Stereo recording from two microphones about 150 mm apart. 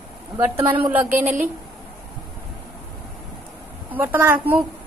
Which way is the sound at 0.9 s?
10° right (ahead or behind).